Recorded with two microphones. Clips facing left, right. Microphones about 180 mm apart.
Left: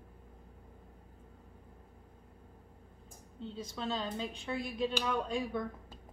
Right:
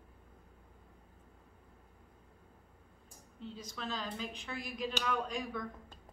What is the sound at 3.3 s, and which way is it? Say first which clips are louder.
A woman's voice: left 4 dB; 30° left (ahead or behind).